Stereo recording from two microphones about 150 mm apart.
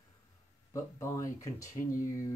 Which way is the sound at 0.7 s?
20° left (ahead or behind).